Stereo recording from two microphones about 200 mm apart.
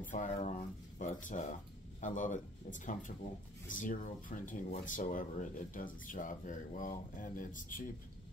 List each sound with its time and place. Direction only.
0.0 s speech: 40° left (ahead or behind)